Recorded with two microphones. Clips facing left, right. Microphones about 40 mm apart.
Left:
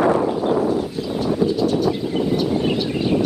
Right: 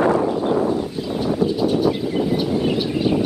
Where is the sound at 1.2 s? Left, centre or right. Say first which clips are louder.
Left 1 dB; centre.